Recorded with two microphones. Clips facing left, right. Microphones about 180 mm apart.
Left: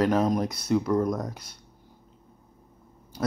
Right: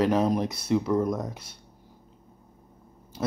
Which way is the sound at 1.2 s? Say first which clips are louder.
Even; 25° right (ahead or behind).